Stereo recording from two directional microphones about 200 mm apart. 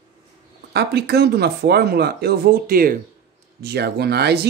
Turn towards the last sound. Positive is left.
turn(degrees=-55)  # may be behind; listen again after turning